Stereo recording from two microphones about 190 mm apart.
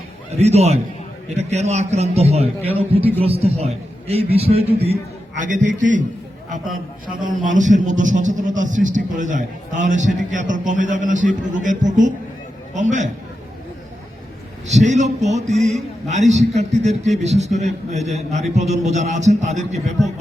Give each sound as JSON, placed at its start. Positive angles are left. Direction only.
{"t": 0.3, "sound": "a man's voice", "side_deg": -35}
{"t": 7.1, "sound": "a man's voice", "side_deg": -40}
{"t": 14.7, "sound": "a man's voice", "side_deg": -40}
{"t": 15.4, "sound": "a man's voice", "side_deg": 0}
{"t": 16.0, "sound": "a man's voice", "side_deg": -35}